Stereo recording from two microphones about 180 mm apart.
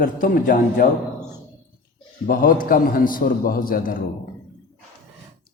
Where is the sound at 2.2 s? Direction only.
50° left (ahead or behind).